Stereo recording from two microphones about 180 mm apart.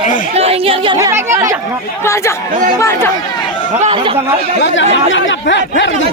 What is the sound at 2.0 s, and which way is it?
Speech, 15° left (ahead or behind).